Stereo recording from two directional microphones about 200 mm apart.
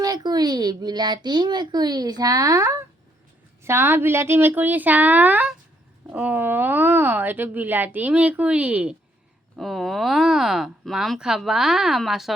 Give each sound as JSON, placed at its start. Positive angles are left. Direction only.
{"t": 0.0, "sound": "a woman's voice", "side_deg": -20}